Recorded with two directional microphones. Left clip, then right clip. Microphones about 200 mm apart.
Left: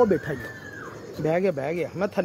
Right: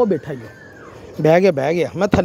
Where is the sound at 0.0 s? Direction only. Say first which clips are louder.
Right 3 dB; 25° right (ahead or behind).